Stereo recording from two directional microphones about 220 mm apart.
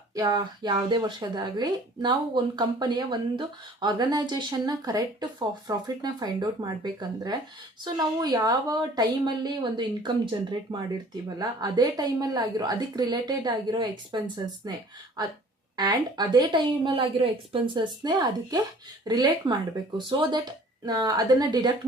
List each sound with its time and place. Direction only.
0.1 s a woman's voice: 15° right (ahead or behind)